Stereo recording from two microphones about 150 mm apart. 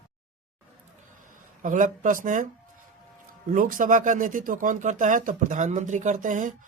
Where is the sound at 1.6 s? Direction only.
60° right (ahead or behind).